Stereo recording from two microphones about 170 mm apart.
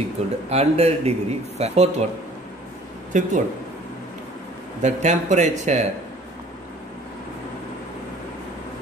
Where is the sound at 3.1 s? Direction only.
45° right (ahead or behind).